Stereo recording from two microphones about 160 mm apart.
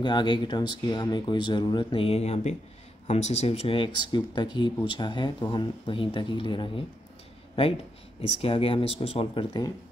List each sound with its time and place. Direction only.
0.0 s speech: 30° left (ahead or behind)
8.4 s speech: 35° left (ahead or behind)